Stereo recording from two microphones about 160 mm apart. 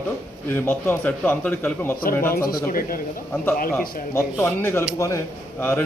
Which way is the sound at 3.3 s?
15° left (ahead or behind).